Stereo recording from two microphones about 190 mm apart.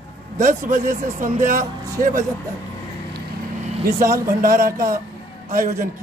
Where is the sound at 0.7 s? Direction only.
40° right (ahead or behind).